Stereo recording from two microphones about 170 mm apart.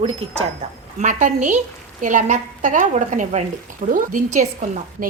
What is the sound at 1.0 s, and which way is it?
A woman's voice, 50° right (ahead or behind).